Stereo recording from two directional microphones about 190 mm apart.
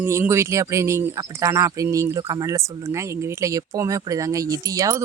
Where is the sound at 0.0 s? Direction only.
15° right (ahead or behind).